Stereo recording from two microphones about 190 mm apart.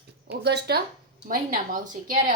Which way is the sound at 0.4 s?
60° right (ahead or behind).